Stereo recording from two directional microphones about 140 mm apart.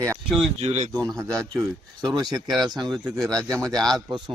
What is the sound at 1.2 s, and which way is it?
Speech, 20° right (ahead or behind).